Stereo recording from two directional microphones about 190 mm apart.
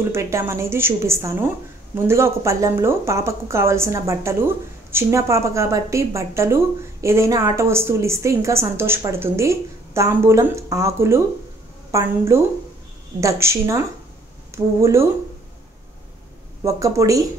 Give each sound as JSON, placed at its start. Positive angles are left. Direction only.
{"t": 0.1, "sound": "a woman's voice", "side_deg": -15}
{"t": 16.6, "sound": "a woman's voice", "side_deg": -15}